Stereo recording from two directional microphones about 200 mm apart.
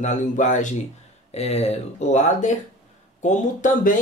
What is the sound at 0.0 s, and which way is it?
Speech, 35° left (ahead or behind).